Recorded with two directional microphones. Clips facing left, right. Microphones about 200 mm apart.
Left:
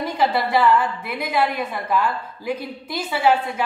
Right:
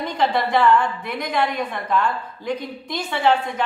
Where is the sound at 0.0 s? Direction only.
5° left (ahead or behind).